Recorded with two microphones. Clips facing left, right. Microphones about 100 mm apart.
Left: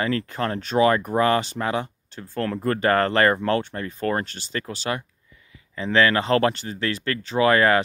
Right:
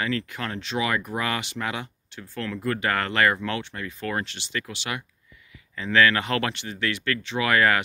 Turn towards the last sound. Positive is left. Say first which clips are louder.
# left 4 dB
turn(degrees=30)  # may be behind; listen again after turning